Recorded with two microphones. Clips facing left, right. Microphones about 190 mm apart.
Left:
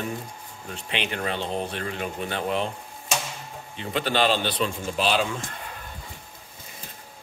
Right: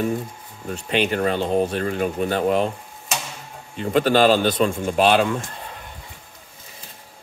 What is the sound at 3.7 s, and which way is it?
Speech, 45° right (ahead or behind).